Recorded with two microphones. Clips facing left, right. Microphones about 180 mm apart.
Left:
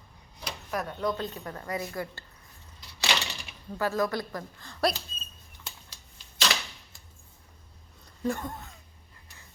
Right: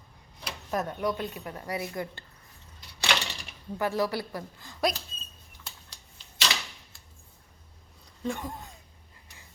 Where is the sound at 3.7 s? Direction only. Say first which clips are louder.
Even; 15° right (ahead or behind).